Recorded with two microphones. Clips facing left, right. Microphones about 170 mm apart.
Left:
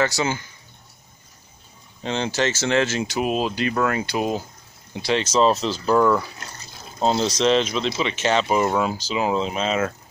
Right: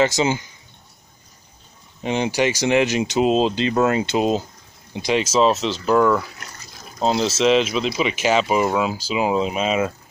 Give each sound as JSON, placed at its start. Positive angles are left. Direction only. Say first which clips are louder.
{"t": 0.0, "sound": "speech", "louder": "right 4 dB", "side_deg": -20}
{"t": 2.0, "sound": "speech", "louder": "right 3 dB", "side_deg": -15}